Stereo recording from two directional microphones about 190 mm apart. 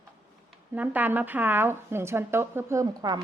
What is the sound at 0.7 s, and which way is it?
A woman's voice, 10° right (ahead or behind).